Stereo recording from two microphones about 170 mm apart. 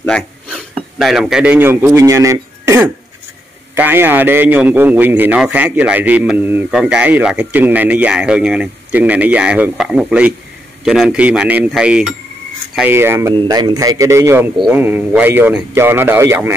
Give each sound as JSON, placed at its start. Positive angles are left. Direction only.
{"t": 0.5, "sound": "a man's voice", "side_deg": 0}
{"t": 13.3, "sound": "a man's voice", "side_deg": -25}